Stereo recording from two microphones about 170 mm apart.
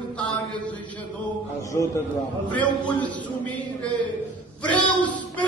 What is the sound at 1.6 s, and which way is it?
A man's voice, 20° left (ahead or behind).